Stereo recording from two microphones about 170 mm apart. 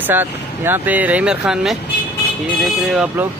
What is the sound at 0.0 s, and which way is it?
Speech, 10° right (ahead or behind).